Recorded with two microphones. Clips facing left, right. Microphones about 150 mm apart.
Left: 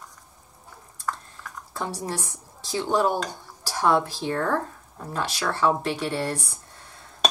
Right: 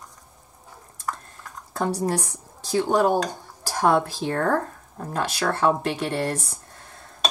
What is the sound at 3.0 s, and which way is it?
Speech, 45° right (ahead or behind).